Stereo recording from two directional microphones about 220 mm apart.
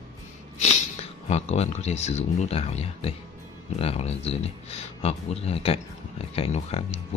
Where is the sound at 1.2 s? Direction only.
30° left (ahead or behind).